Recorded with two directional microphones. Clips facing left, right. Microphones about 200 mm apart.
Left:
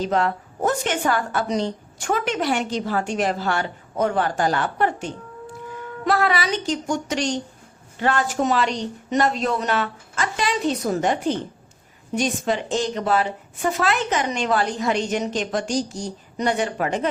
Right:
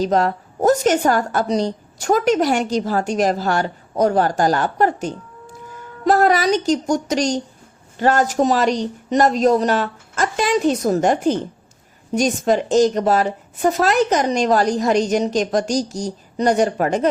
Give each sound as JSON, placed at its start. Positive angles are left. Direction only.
{"t": 0.0, "sound": "a woman's voice", "side_deg": -40}